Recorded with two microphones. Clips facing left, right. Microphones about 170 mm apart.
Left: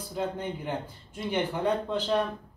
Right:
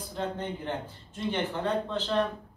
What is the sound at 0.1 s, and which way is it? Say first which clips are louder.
Speech: left 2 dB; 10° left (ahead or behind).